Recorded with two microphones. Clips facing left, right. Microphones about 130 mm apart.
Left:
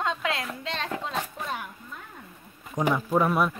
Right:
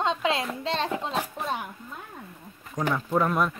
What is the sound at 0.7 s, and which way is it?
Speech, 30° right (ahead or behind).